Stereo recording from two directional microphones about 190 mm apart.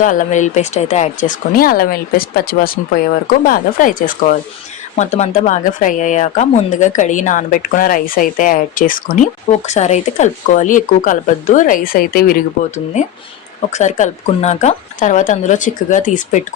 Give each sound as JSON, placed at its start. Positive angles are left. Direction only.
{"t": 0.0, "sound": "speech", "side_deg": 45}